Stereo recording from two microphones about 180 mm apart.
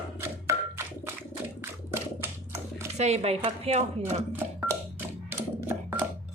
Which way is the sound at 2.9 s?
40° right (ahead or behind).